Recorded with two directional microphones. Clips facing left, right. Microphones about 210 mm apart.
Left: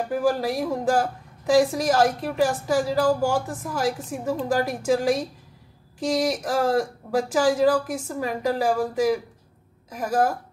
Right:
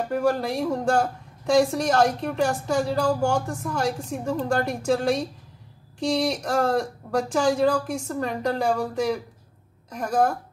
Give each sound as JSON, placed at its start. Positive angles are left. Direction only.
{"t": 0.1, "sound": "a woman's voice", "side_deg": 5}